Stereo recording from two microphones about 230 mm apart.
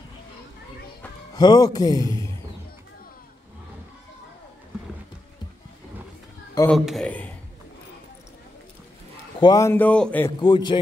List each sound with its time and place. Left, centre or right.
1.3 s a man's voice: centre
6.7 s speech: centre
9.4 s a man's voice: centre
10.4 s a man's voice: centre